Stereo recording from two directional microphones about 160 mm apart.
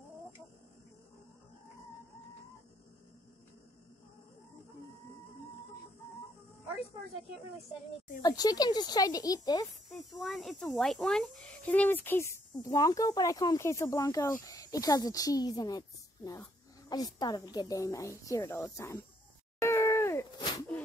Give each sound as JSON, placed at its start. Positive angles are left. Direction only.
{"t": 8.2, "sound": "speech", "side_deg": 25}
{"t": 9.8, "sound": "speech", "side_deg": 0}
{"t": 16.9, "sound": "speech", "side_deg": 25}
{"t": 19.6, "sound": "groan", "side_deg": 15}